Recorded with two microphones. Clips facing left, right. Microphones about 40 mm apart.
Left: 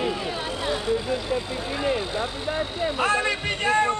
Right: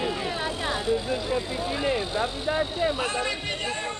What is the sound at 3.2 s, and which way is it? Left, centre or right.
Speech, left.